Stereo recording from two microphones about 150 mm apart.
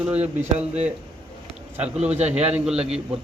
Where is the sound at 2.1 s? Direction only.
45° right (ahead or behind).